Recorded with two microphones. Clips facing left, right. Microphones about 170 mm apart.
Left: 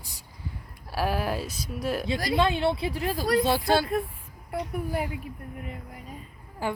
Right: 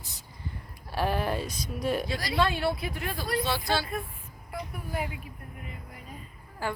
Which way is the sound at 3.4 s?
50° left (ahead or behind).